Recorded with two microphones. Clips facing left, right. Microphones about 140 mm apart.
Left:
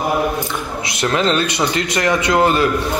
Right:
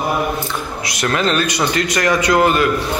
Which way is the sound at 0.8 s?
25° left (ahead or behind).